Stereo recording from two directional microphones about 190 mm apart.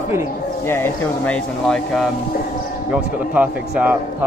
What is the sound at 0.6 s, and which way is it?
Speech, 15° left (ahead or behind).